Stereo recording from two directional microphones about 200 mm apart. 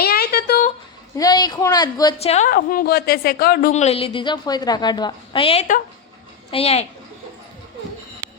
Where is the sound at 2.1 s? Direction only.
30° left (ahead or behind); by 3.7 s 50° left (ahead or behind).